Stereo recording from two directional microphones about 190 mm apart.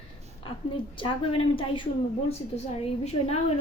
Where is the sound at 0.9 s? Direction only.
25° left (ahead or behind).